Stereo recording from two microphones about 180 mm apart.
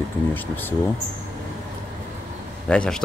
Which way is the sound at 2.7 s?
5° left (ahead or behind).